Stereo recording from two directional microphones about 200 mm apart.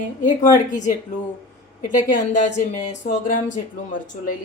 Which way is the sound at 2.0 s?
40° left (ahead or behind).